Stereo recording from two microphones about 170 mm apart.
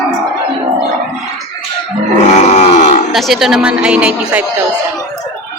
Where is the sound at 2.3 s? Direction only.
40° left (ahead or behind).